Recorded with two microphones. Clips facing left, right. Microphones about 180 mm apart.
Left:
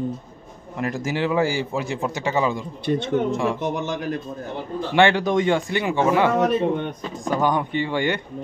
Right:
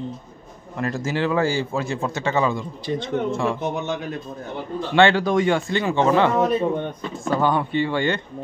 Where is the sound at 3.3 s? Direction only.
15° left (ahead or behind).